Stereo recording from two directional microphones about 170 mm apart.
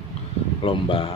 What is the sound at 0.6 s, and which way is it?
Speech, 30° left (ahead or behind).